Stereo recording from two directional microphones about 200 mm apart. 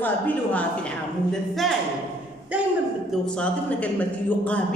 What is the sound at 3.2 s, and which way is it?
A woman's voice, 5° left (ahead or behind).